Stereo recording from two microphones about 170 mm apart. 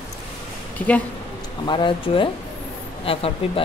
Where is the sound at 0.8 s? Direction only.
10° left (ahead or behind).